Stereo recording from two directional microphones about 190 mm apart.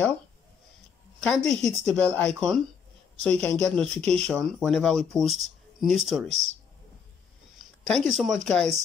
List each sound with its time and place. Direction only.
1.2 s speech: 5° left (ahead or behind)
7.5 s a sound: 5° left (ahead or behind)
8.1 s speech: centre (ahead or behind)